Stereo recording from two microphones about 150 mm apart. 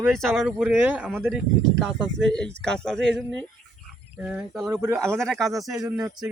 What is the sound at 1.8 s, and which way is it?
Speech, 5° left (ahead or behind).